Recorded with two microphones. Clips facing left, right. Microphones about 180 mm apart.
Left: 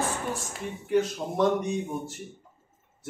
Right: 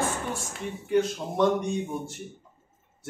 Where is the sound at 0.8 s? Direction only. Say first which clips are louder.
Even; centre (ahead or behind).